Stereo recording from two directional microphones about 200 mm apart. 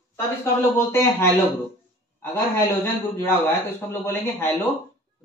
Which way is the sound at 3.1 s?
10° left (ahead or behind).